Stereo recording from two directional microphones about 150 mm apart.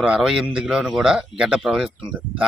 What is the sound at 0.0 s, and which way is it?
Speech, 5° right (ahead or behind).